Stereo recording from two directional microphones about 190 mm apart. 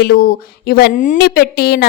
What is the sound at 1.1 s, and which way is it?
Speech, 55° left (ahead or behind).